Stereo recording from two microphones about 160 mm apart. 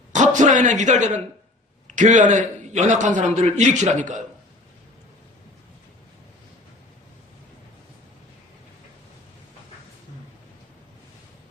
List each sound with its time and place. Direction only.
0.1 s a man's voice: 50° right (ahead or behind)